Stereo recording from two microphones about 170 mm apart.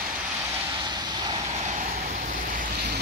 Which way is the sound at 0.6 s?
25° right (ahead or behind).